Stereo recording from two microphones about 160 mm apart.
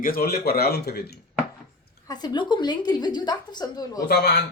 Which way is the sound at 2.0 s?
25° left (ahead or behind).